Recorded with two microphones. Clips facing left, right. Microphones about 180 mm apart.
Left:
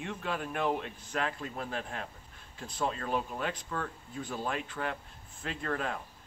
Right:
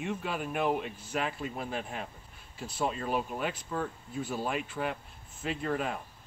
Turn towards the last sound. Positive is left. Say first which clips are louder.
# right 3 dB
turn(degrees=-10)  # may be behind; listen again after turning